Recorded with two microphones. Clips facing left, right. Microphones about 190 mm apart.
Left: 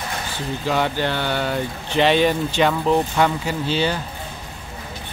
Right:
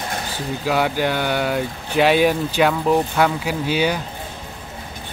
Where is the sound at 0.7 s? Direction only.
10° right (ahead or behind).